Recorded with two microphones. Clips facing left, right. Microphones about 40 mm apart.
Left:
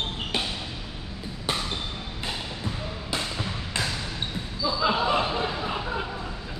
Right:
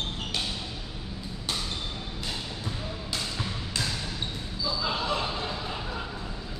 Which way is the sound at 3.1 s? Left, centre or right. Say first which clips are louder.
Left 4 dB; left.